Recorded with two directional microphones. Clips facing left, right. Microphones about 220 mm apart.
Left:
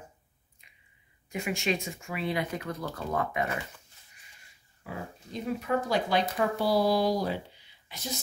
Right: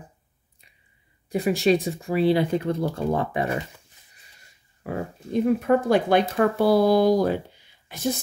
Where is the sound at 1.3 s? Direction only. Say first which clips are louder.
Right 10 dB; 35° right (ahead or behind).